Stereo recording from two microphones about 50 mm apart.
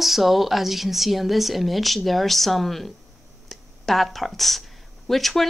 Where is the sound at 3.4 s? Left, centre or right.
Centre.